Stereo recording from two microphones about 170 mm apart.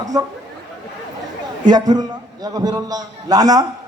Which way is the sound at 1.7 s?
25° right (ahead or behind).